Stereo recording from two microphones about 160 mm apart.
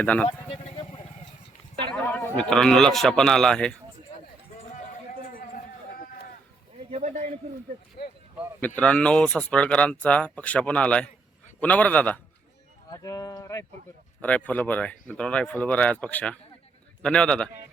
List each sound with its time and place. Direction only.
0.0 s speech: 10° left (ahead or behind)
0.3 s a sound: 30° left (ahead or behind)
1.9 s a man's voice: 10° left (ahead or behind)
6.0 s a sound: 65° left (ahead or behind)
6.9 s speech: 50° right (ahead or behind)
8.6 s speech: 10° left (ahead or behind)
12.9 s speech: 20° left (ahead or behind)
14.2 s a man's voice: 10° left (ahead or behind)